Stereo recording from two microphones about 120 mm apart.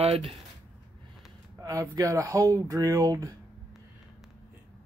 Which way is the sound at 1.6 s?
30° right (ahead or behind).